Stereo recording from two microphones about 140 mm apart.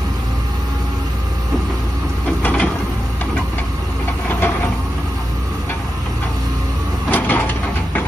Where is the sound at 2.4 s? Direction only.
10° left (ahead or behind).